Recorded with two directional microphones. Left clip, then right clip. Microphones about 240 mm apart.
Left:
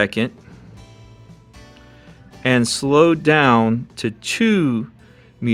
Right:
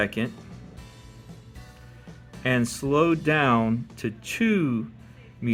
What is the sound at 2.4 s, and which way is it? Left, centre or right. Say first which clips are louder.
Speech: left 7 dB; left.